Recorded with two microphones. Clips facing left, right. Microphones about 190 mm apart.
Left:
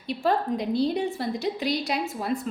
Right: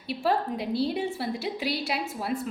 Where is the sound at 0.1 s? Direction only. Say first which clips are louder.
Left 2 dB; 5° right (ahead or behind).